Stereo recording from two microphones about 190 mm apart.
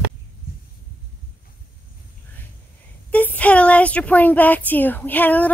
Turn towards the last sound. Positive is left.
turn(degrees=10)  # may be behind; listen again after turning